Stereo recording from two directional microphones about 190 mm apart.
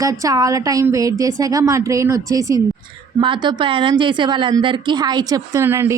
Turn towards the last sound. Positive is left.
turn(degrees=-15)  # may be behind; listen again after turning